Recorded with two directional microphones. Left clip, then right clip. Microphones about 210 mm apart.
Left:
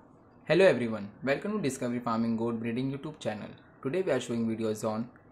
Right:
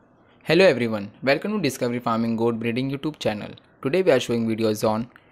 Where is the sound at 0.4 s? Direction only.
45° right (ahead or behind).